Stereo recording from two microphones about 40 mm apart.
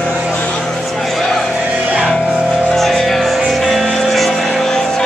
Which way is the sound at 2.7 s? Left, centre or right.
Centre.